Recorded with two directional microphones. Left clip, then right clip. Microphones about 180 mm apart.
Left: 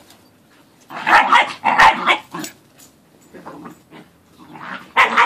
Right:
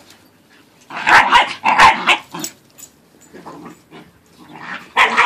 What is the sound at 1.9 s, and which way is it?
Dog, centre (ahead or behind).